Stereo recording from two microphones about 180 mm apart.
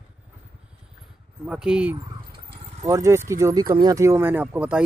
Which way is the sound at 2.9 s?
15° right (ahead or behind).